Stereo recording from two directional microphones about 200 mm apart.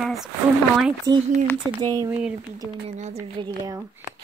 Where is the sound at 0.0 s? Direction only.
Centre (ahead or behind).